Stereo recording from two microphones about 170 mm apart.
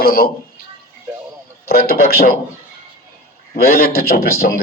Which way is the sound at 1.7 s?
65° left (ahead or behind).